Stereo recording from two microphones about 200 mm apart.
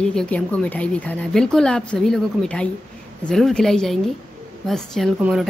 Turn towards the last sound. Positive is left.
turn(degrees=-5)  # may be behind; listen again after turning